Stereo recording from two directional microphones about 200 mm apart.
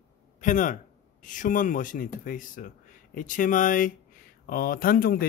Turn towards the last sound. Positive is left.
turn(degrees=45)  # may be behind; listen again after turning